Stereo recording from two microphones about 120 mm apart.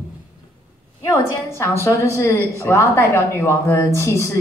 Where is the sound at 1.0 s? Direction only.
25° left (ahead or behind).